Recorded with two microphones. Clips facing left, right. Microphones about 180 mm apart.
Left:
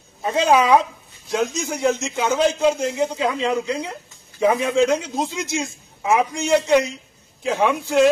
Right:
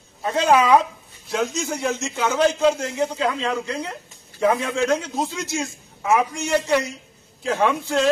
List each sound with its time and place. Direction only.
0.2 s a man's voice: 15° left (ahead or behind)